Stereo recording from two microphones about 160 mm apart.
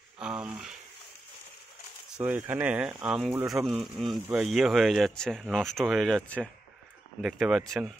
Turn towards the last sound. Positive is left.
turn(degrees=-5)  # may be behind; listen again after turning